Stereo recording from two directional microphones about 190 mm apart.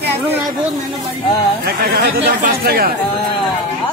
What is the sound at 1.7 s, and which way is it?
Speech, 55° right (ahead or behind).